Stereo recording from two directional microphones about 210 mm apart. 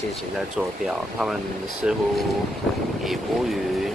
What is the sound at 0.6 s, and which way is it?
Speech, centre (ahead or behind).